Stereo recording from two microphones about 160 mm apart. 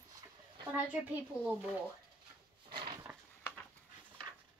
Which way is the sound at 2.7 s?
30° right (ahead or behind).